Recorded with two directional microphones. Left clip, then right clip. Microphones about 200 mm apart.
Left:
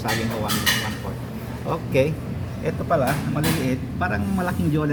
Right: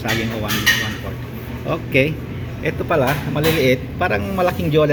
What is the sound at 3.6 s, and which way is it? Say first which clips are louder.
A man's voice: right 8 dB; 15° right (ahead or behind).